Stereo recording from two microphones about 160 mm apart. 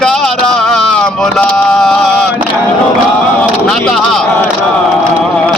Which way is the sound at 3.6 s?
5° left (ahead or behind).